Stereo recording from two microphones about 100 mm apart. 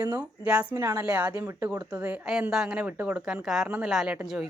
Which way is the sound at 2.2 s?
5° right (ahead or behind).